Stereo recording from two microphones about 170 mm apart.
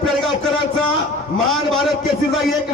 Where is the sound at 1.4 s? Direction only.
Centre (ahead or behind).